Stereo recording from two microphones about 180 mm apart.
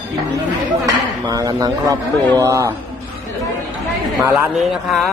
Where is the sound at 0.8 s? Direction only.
20° right (ahead or behind).